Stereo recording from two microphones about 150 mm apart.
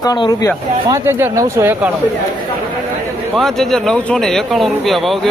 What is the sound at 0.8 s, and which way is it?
Speech, 20° right (ahead or behind).